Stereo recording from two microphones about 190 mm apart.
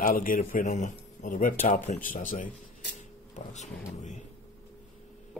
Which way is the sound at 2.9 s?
40° left (ahead or behind).